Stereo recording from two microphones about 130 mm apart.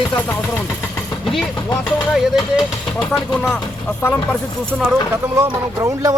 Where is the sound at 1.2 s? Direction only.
Centre (ahead or behind).